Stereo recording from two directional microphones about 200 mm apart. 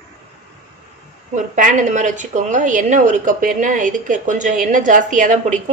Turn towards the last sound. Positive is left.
turn(degrees=-40)  # may be behind; listen again after turning